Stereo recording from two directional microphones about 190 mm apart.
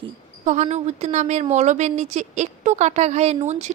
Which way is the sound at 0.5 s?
35° right (ahead or behind).